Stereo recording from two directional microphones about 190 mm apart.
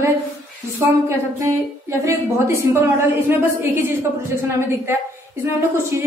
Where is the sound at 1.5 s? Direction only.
15° right (ahead or behind).